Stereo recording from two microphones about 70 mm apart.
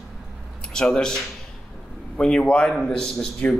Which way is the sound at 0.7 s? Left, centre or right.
Centre.